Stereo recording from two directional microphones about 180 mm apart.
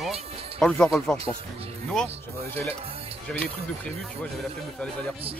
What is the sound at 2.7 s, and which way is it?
Music, 35° right (ahead or behind).